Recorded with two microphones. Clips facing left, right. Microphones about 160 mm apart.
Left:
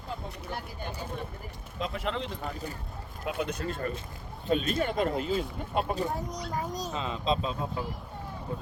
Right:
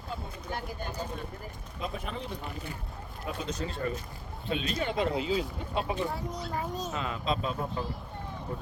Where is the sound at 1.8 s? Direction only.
85° left.